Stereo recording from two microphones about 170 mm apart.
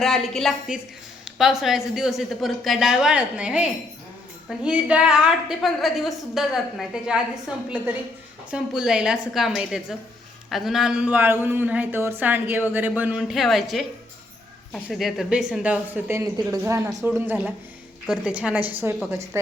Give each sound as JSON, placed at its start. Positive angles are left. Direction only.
{"t": 0.0, "sound": "a woman's voice", "side_deg": 0}